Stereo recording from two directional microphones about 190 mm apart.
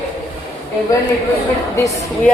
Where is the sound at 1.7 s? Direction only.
15° left (ahead or behind).